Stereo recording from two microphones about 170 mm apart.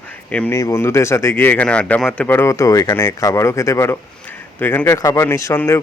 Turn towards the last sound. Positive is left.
turn(degrees=15)  # may be behind; listen again after turning